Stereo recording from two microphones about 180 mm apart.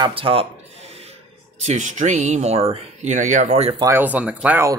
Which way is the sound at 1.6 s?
40° right (ahead or behind).